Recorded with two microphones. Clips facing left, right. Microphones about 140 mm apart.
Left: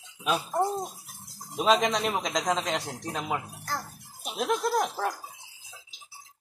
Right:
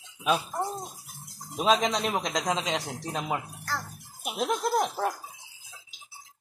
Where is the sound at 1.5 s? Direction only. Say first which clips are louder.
Left 1 dB; centre (ahead or behind).